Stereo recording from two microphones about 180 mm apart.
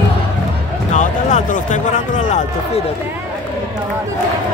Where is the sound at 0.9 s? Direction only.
40° left (ahead or behind).